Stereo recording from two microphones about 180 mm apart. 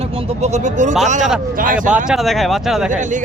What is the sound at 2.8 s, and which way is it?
Speech, 45° right (ahead or behind).